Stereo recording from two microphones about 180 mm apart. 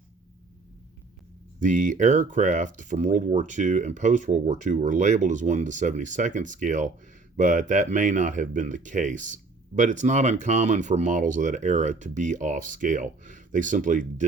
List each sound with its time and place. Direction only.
1.5 s speech: 45° right (ahead or behind)